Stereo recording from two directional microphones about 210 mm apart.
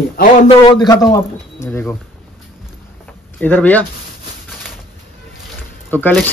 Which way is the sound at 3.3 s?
10° left (ahead or behind).